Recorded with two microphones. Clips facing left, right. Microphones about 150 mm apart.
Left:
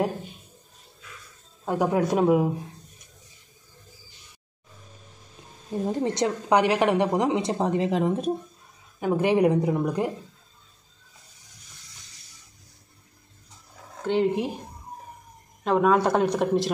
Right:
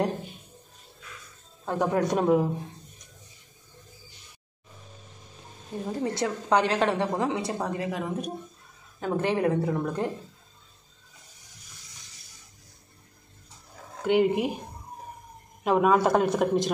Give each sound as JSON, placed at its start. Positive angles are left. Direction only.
{"t": 1.7, "sound": "speech", "side_deg": 10}
{"t": 5.9, "sound": "a woman's voice", "side_deg": 20}
{"t": 9.0, "sound": "speech", "side_deg": 15}
{"t": 14.0, "sound": "speech", "side_deg": -5}
{"t": 15.6, "sound": "speech", "side_deg": -5}